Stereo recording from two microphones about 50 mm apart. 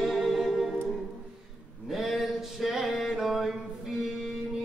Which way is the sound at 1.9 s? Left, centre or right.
Centre.